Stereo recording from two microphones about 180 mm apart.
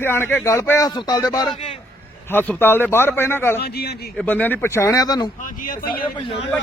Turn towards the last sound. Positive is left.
turn(degrees=30)  # may be behind; listen again after turning